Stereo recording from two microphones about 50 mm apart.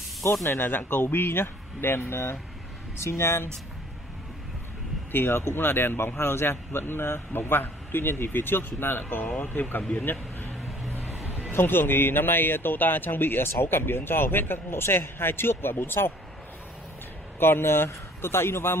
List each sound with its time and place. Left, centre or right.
0.2 s speech: left
5.1 s speech: left
11.5 s speech: left
17.4 s speech: left